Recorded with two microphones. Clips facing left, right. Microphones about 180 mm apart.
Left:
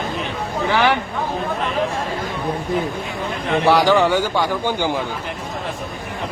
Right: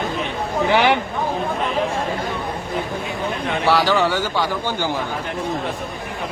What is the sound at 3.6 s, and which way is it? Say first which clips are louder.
A man's voice: left 3 dB; 15° left (ahead or behind).